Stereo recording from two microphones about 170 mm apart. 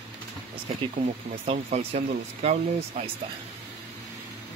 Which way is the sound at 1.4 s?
40° right (ahead or behind).